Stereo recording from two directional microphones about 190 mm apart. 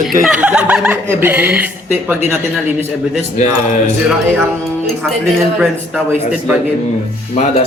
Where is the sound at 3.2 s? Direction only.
40° left (ahead or behind).